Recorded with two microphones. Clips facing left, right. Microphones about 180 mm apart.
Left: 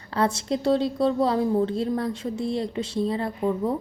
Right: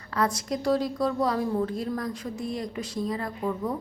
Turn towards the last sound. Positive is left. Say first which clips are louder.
# left 5 dB
turn(degrees=30)  # may be behind; listen again after turning